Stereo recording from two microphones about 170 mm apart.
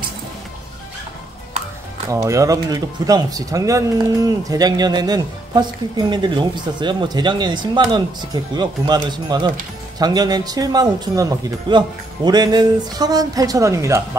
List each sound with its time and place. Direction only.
2.0 s speech: 20° right (ahead or behind)